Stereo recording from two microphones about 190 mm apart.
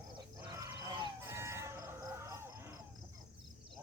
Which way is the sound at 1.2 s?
15° right (ahead or behind).